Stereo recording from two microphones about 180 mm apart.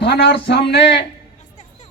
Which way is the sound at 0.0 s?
65° left (ahead or behind).